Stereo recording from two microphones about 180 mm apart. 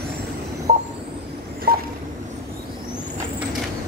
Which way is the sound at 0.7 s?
45° right (ahead or behind).